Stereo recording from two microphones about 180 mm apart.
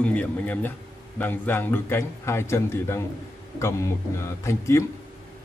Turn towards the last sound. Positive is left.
turn(degrees=15)  # may be behind; listen again after turning